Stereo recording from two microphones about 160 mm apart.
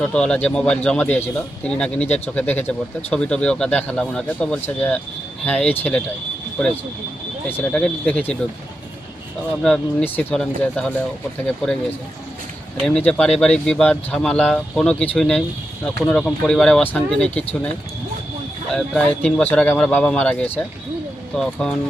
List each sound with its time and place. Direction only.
0.0 s speech: 5° left (ahead or behind)
7.4 s speech: 10° left (ahead or behind)
9.6 s speech: 5° left (ahead or behind)
12.8 s speech: 5° left (ahead or behind)
18.7 s speech: 5° left (ahead or behind)